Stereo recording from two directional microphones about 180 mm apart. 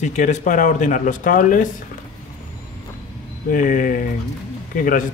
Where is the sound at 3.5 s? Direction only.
45° left (ahead or behind).